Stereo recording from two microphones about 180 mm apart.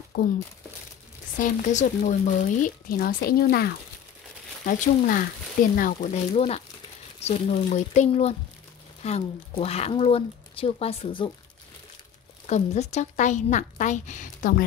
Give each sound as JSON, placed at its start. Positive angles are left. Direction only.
{"t": 0.1, "sound": "speech", "side_deg": 55}
{"t": 1.4, "sound": "speech", "side_deg": 45}
{"t": 6.3, "sound": "speech", "side_deg": 35}
{"t": 12.4, "sound": "speech", "side_deg": 40}